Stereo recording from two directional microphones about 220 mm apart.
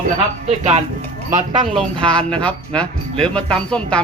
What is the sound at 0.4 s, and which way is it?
Speech, 30° right (ahead or behind).